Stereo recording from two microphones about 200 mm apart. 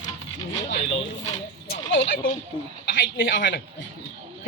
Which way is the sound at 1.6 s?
60° left (ahead or behind).